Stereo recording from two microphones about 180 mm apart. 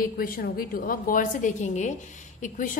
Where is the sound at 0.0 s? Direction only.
55° left (ahead or behind).